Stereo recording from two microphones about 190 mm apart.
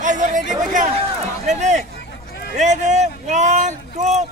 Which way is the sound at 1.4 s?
40° right (ahead or behind).